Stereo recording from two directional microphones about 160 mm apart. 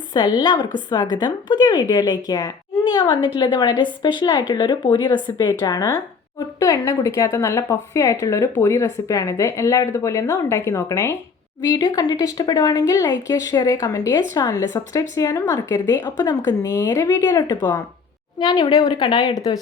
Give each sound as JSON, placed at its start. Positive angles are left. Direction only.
{"t": 0.1, "sound": "a woman's voice", "side_deg": 25}